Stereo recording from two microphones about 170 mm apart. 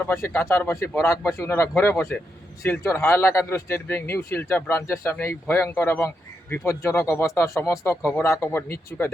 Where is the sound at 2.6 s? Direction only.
15° left (ahead or behind).